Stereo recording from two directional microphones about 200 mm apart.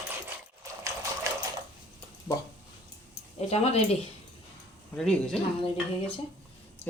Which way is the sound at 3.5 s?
30° left (ahead or behind).